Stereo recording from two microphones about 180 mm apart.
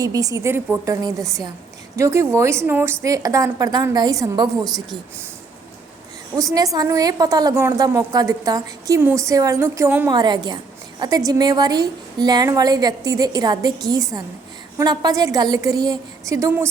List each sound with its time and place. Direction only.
0.0 s a woman's voice: 20° right (ahead or behind)
6.3 s a woman's voice: 20° right (ahead or behind)
10.1 s a woman's voice: 25° right (ahead or behind)